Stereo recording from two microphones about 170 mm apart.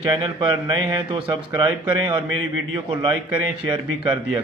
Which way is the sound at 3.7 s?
30° right (ahead or behind).